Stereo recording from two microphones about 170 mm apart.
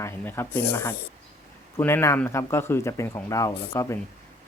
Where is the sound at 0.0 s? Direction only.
15° left (ahead or behind).